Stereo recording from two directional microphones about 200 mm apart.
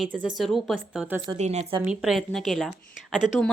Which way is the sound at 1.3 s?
35° right (ahead or behind).